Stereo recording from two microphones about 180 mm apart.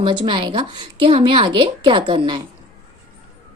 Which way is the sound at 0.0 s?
25° right (ahead or behind).